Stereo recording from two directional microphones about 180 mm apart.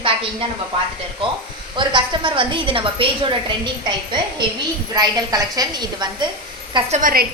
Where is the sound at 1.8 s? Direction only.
25° right (ahead or behind).